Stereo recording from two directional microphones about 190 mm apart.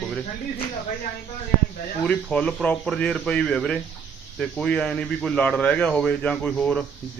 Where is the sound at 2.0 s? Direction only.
5° left (ahead or behind).